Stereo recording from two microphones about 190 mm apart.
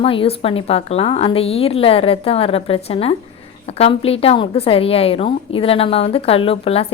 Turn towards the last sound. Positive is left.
turn(degrees=30)  # may be behind; listen again after turning